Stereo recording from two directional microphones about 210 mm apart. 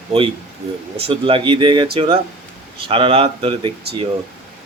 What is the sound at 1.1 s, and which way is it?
Speech, 25° right (ahead or behind).